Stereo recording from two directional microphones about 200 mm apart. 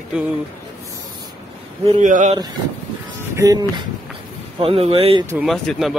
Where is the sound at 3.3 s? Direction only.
15° right (ahead or behind).